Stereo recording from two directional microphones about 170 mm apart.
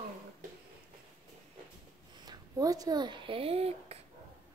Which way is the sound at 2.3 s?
20° right (ahead or behind).